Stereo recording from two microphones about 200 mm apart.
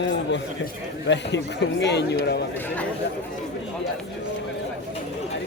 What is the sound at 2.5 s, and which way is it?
Speech, 10° left (ahead or behind).